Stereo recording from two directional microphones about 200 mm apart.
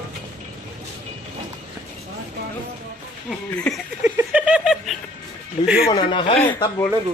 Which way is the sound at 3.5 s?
5° left (ahead or behind).